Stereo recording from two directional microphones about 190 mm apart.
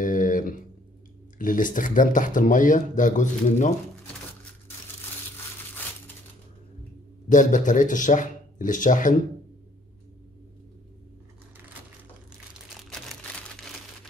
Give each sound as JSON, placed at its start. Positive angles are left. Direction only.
{"t": 0.0, "sound": "a sound", "side_deg": 45}
{"t": 1.4, "sound": "speech", "side_deg": 45}
{"t": 7.2, "sound": "speech", "side_deg": 40}